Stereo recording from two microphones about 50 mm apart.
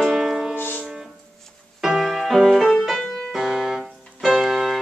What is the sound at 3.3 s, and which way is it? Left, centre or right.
Music, centre.